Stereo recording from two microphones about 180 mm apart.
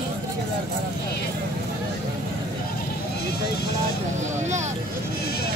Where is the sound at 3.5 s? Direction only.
60° left (ahead or behind).